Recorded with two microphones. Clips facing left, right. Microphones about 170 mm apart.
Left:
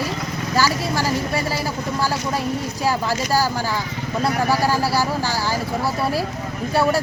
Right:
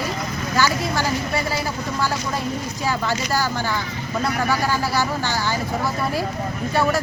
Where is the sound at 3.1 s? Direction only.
35° left (ahead or behind).